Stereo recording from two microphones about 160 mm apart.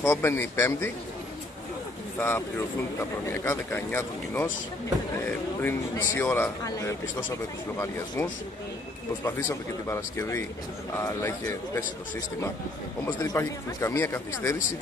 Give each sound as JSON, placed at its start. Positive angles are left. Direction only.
{"t": 0.0, "sound": "a man's voice", "side_deg": 15}
{"t": 2.1, "sound": "a man's voice", "side_deg": 10}
{"t": 9.2, "sound": "a man's voice", "side_deg": 15}
{"t": 13.0, "sound": "a man's voice", "side_deg": 20}